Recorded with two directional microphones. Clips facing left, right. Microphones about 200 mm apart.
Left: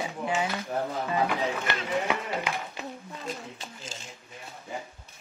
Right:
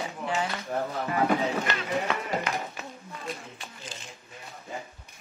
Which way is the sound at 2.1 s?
15° left (ahead or behind).